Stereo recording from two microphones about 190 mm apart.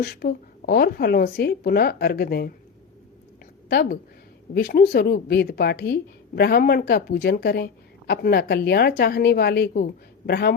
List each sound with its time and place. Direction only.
0.0 s a woman's voice: 55° left (ahead or behind)
3.7 s a woman's voice: 55° left (ahead or behind)